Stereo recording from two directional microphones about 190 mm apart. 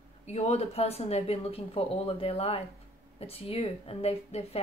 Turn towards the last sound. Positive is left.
turn(degrees=30)  # may be behind; listen again after turning